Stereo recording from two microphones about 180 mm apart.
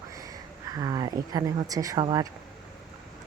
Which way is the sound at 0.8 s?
20° right (ahead or behind).